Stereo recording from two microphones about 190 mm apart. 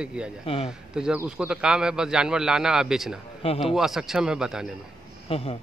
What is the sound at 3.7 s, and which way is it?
Speech, centre (ahead or behind).